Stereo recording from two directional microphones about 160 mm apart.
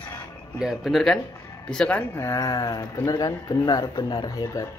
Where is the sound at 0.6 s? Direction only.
Centre (ahead or behind); by 4.7 s 20° left (ahead or behind).